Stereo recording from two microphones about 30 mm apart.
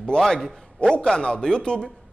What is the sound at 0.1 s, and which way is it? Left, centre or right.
A man's voice, left.